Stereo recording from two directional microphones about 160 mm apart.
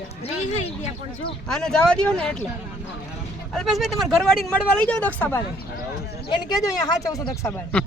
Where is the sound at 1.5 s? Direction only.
5° left (ahead or behind).